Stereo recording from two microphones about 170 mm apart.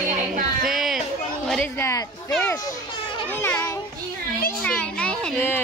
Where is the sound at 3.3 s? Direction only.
15° left (ahead or behind).